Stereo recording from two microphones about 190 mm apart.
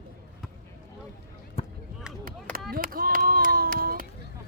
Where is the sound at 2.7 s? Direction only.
50° right (ahead or behind).